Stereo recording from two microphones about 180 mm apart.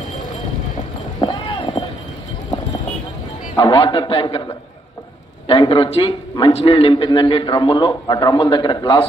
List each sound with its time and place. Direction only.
1.2 s clip-clop: 25° left (ahead or behind)
3.5 s a man's voice: 25° left (ahead or behind)
5.5 s a man's voice: 30° left (ahead or behind)